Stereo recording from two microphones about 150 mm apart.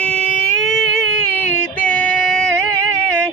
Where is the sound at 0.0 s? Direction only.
5° left (ahead or behind).